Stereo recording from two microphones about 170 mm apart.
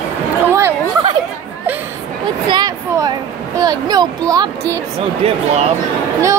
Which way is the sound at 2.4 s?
25° right (ahead or behind).